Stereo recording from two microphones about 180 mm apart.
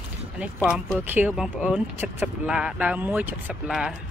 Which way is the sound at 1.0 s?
10° right (ahead or behind).